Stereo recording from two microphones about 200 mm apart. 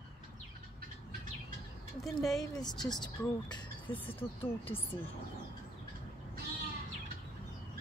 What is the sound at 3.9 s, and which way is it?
Speech, 10° left (ahead or behind).